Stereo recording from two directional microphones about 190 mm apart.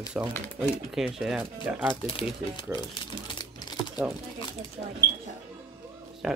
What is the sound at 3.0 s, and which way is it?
Typewriter, 25° left (ahead or behind).